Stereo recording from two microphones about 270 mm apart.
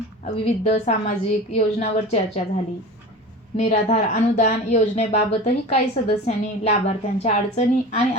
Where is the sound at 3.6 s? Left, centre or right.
Left.